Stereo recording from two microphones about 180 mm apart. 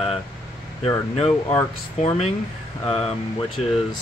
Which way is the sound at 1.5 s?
30° left (ahead or behind).